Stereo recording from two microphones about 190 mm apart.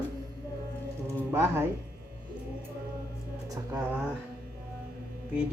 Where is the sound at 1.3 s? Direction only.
10° right (ahead or behind).